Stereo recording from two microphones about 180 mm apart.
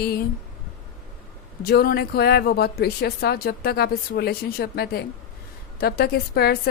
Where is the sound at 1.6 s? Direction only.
55° left (ahead or behind).